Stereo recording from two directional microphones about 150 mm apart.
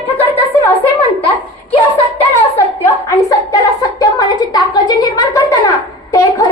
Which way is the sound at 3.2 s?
20° left (ahead or behind).